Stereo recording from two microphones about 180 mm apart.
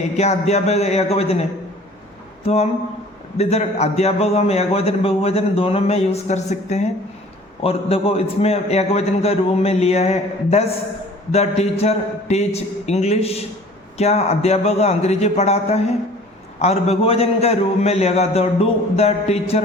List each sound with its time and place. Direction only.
0.2 s a man's voice: 40° left (ahead or behind)
2.4 s a sound: 35° left (ahead or behind)
3.3 s a man's voice: 35° left (ahead or behind)